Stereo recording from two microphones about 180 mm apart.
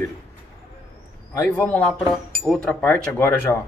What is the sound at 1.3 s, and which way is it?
Speech, 15° left (ahead or behind).